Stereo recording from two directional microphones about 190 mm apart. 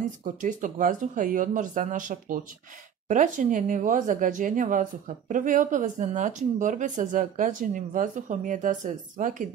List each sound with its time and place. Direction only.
0.2 s speech: 40° right (ahead or behind)